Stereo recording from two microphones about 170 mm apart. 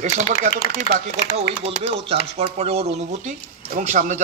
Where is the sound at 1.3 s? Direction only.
35° right (ahead or behind).